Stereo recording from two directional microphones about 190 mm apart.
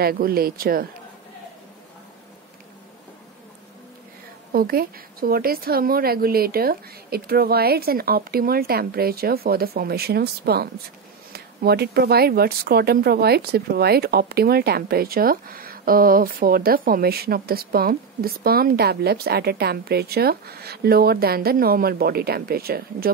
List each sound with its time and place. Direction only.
0.0 s a woman's voice: 50° right (ahead or behind)
4.5 s a woman's voice: 50° right (ahead or behind)